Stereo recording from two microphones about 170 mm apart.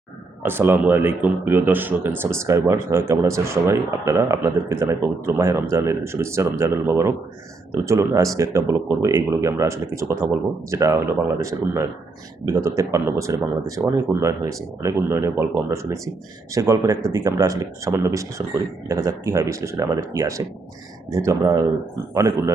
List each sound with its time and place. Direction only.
0.4 s speech: 10° right (ahead or behind)